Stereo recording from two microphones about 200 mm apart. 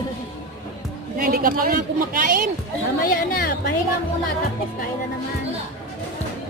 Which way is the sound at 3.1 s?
45° left (ahead or behind).